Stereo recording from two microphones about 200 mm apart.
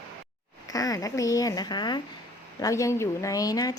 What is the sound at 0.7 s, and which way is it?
Speech, 15° left (ahead or behind).